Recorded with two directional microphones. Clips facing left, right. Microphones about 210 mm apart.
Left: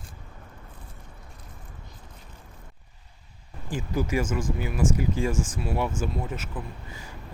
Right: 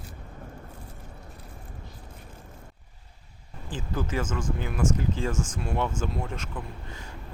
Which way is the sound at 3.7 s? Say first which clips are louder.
Left 4 dB; 10° left (ahead or behind).